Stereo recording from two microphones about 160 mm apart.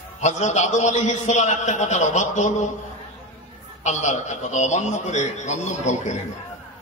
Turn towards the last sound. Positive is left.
turn(degrees=45)  # may be behind; listen again after turning